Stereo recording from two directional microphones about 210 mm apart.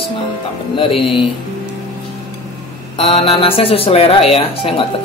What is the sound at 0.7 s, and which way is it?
Speech, 25° left (ahead or behind).